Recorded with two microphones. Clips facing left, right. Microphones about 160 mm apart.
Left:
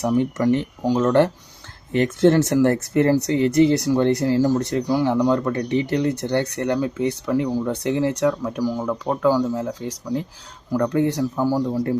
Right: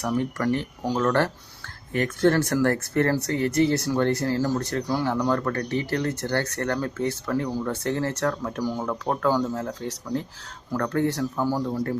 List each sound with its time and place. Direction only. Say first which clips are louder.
0.0 s speech: left 6 dB; 20° left (ahead or behind)